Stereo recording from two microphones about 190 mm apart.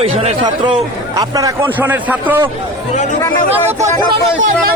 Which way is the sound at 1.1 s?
20° right (ahead or behind).